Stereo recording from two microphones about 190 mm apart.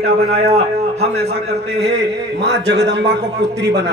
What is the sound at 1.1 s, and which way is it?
A man's voice, 60° right (ahead or behind).